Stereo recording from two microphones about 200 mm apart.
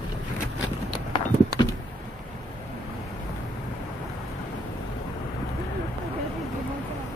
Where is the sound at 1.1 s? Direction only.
20° left (ahead or behind).